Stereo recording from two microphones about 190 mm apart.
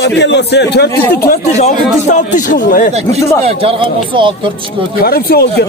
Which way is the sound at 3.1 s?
30° right (ahead or behind).